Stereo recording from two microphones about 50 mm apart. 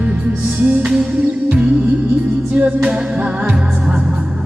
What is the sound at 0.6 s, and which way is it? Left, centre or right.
Music, right.